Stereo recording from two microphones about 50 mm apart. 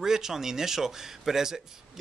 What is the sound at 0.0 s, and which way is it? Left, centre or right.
Speech, centre.